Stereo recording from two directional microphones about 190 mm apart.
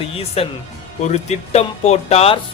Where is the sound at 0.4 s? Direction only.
30° left (ahead or behind).